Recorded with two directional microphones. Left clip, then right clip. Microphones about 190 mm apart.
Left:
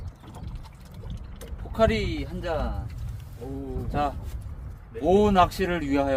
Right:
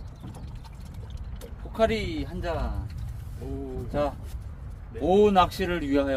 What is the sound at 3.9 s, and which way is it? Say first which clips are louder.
Speech: even; 25° left (ahead or behind).